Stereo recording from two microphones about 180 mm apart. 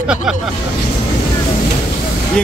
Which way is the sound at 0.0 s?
5° right (ahead or behind).